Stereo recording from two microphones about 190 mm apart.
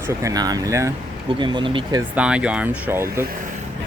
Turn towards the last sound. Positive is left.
turn(degrees=-10)  # may be behind; listen again after turning